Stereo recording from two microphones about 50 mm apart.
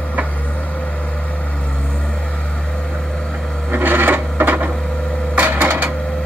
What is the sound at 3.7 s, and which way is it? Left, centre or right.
Printer, right.